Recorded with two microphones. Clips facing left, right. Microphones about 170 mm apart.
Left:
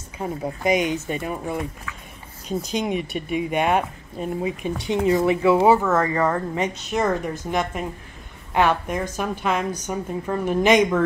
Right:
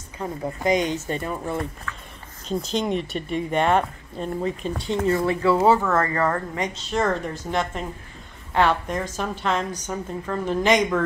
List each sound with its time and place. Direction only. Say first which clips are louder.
0.2 s speech: left 1 dB; 10° left (ahead or behind)